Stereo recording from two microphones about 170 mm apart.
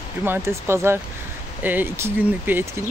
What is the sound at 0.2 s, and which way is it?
Speech, 15° right (ahead or behind).